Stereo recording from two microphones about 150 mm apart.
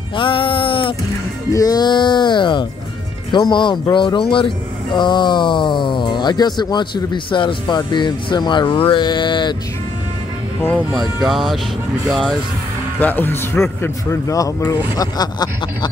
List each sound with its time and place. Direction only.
0.1 s music: 35° left (ahead or behind)
1.5 s music: 25° left (ahead or behind)
3.3 s speech: 30° left (ahead or behind)
11.0 s speech: centre (ahead or behind)
13.0 s speech: 15° left (ahead or behind)